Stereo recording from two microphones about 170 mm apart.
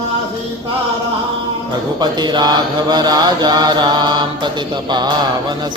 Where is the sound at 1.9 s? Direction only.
25° right (ahead or behind).